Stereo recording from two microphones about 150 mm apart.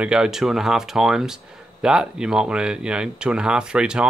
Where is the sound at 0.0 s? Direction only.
5° right (ahead or behind).